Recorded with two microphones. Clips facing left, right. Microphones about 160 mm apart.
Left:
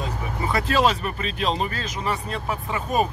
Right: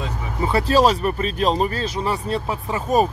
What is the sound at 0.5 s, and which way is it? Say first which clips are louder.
Speech: right 4 dB; 35° right (ahead or behind).